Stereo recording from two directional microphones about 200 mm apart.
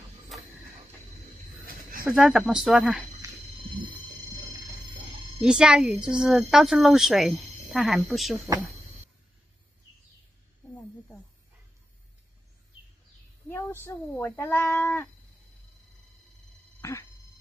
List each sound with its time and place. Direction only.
2.0 s a woman's voice: 5° right (ahead or behind)
5.4 s a woman's voice: 5° right (ahead or behind)
13.5 s speech: 10° left (ahead or behind)
16.8 s speech: 15° left (ahead or behind)